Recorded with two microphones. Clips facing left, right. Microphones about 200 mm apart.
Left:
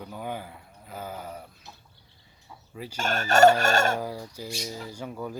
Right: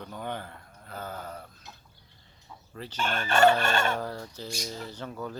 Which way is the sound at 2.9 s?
40° left (ahead or behind).